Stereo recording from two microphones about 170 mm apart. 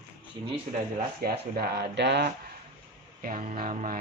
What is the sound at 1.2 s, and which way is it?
Speech, 65° right (ahead or behind).